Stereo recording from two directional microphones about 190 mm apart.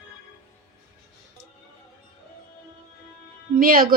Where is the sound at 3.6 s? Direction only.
50° right (ahead or behind).